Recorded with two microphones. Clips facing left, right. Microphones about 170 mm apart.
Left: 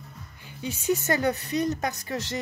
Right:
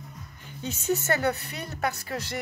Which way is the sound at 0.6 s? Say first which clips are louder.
Left 1 dB; 15° left (ahead or behind).